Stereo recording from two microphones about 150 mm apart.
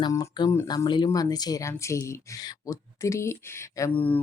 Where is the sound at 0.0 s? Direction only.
25° left (ahead or behind).